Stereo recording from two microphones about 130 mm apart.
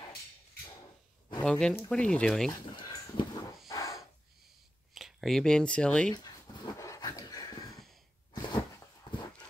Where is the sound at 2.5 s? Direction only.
35° left (ahead or behind).